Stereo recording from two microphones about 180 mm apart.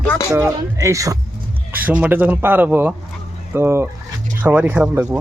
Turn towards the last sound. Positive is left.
turn(degrees=-10)  # may be behind; listen again after turning